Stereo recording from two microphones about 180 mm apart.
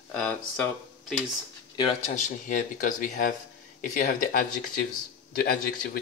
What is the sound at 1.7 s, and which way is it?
Speech, 30° left (ahead or behind).